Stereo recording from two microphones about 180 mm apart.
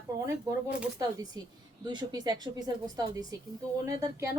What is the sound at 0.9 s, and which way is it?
A woman's voice, 20° right (ahead or behind).